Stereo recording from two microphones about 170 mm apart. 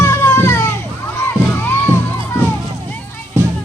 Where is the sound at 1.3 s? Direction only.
15° left (ahead or behind).